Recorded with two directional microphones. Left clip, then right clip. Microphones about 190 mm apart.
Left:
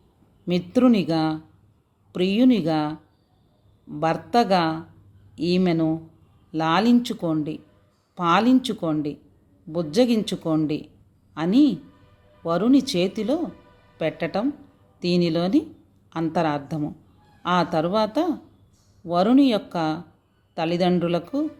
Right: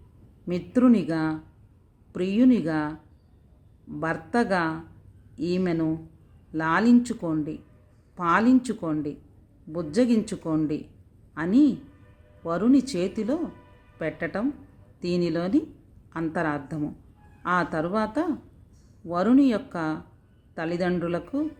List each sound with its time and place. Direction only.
0.4 s speech: 5° right (ahead or behind)
4.0 s speech: 5° right (ahead or behind)